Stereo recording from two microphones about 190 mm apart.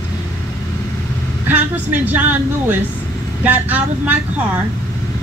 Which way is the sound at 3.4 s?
10° right (ahead or behind).